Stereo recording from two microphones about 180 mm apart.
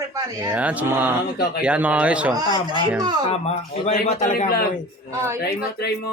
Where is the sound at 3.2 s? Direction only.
35° left (ahead or behind); by 4.8 s 55° left (ahead or behind).